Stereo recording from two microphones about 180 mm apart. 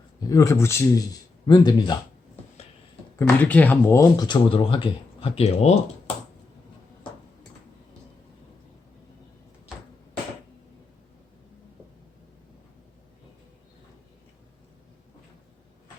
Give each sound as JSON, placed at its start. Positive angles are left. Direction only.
{"t": 0.2, "sound": "speech", "side_deg": 20}
{"t": 3.2, "sound": "speech", "side_deg": 10}